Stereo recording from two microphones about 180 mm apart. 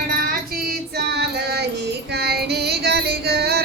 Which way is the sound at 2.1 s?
65° right (ahead or behind).